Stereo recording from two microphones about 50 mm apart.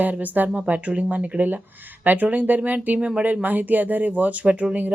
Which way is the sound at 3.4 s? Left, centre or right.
Right.